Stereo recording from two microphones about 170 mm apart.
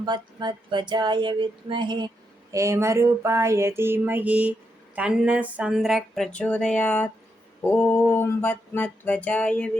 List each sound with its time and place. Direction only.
0.0 s speech: 25° right (ahead or behind)
2.5 s a sound: 15° right (ahead or behind); by 7.1 s 10° left (ahead or behind)
7.6 s music: 10° left (ahead or behind)